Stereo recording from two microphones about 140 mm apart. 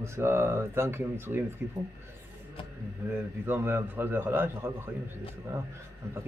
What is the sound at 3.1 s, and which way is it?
Speech, 15° right (ahead or behind).